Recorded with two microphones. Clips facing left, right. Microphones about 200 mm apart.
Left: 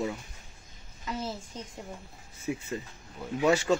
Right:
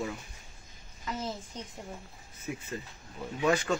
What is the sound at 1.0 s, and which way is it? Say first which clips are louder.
Speech: left 1 dB; 10° left (ahead or behind).